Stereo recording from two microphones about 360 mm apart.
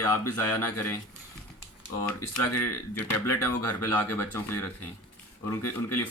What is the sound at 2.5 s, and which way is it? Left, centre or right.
Speech, left.